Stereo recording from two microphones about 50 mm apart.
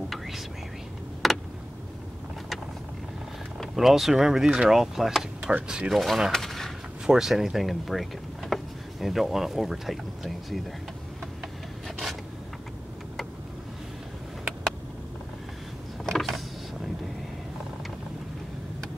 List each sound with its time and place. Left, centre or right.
1.2 s vehicle: centre
3.5 s speech: centre
5.7 s speech: centre
5.9 s speech: centre
6.3 s a sound: centre
7.1 s speech: centre
16.1 s a sound: centre